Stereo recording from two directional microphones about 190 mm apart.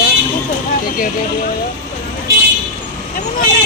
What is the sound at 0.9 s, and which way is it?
Speech, 45° left (ahead or behind).